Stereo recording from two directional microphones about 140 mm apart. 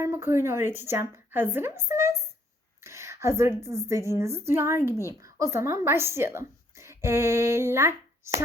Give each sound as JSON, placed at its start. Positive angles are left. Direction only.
{"t": 0.0, "sound": "a woman's voice", "side_deg": -20}
{"t": 2.8, "sound": "a sound", "side_deg": -20}
{"t": 3.6, "sound": "a woman's voice", "side_deg": -20}